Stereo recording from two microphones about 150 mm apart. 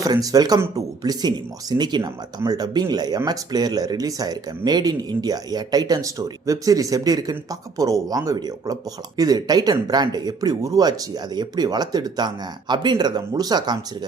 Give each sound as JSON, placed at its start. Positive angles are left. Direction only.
{"t": 0.0, "sound": "speech", "side_deg": -25}